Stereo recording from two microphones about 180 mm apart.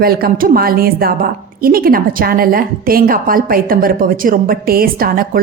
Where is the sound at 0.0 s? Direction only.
55° right (ahead or behind).